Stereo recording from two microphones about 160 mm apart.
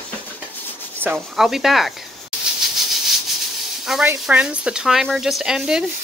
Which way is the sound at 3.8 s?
5° right (ahead or behind).